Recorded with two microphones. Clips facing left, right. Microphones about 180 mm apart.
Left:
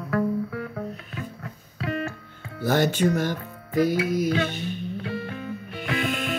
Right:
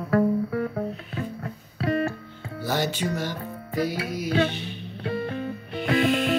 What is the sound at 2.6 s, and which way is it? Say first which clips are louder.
Speech: left 5 dB; 50° left (ahead or behind).